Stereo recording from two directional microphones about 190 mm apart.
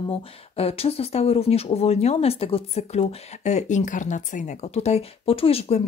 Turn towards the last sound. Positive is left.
turn(degrees=30)  # may be behind; listen again after turning